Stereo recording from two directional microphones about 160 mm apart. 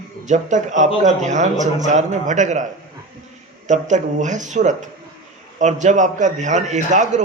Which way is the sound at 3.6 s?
50° right (ahead or behind).